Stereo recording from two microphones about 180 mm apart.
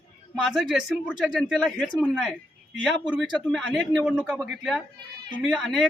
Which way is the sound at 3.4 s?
5° left (ahead or behind).